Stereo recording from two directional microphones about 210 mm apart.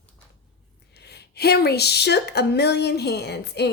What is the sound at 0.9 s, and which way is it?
Speech, 50° left (ahead or behind).